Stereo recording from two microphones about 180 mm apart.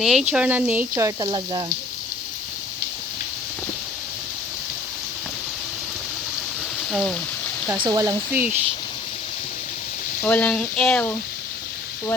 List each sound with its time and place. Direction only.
0.0 s speech: centre (ahead or behind); by 1.6 s 20° right (ahead or behind)
6.9 s speech: centre (ahead or behind)
7.8 s speech: 20° right (ahead or behind)
10.2 s speech: 10° left (ahead or behind)